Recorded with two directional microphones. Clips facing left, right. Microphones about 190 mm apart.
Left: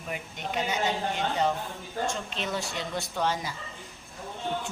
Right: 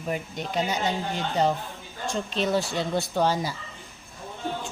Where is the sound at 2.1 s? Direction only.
35° right (ahead or behind).